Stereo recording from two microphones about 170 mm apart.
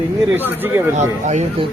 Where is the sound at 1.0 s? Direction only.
45° right (ahead or behind).